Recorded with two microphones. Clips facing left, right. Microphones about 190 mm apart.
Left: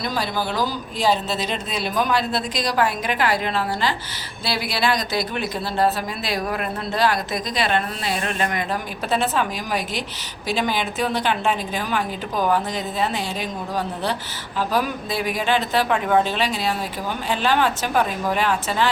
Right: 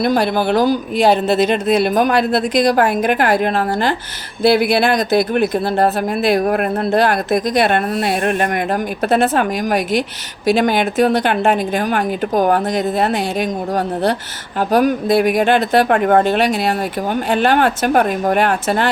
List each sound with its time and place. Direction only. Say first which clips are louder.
0.0 s a woman's voice: right 10 dB; 60° right (ahead or behind)
14.7 s speech: right 12 dB; 60° right (ahead or behind)